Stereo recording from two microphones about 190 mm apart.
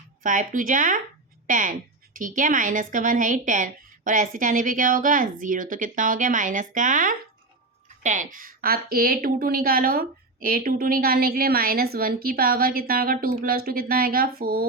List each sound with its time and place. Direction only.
0.2 s a woman's voice: 45° right (ahead or behind)